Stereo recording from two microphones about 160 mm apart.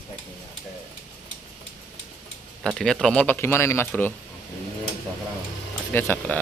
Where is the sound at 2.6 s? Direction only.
5° left (ahead or behind).